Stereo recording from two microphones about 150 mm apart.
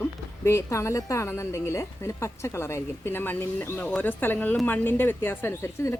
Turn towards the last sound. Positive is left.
turn(degrees=20)  # may be behind; listen again after turning